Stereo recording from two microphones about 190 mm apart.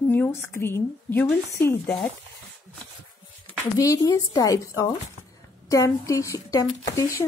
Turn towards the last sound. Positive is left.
turn(degrees=15)  # may be behind; listen again after turning